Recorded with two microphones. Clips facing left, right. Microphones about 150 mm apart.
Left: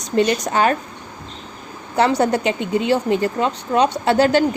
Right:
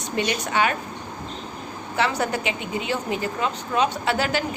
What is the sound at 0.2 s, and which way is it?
Speech, 40° left (ahead or behind).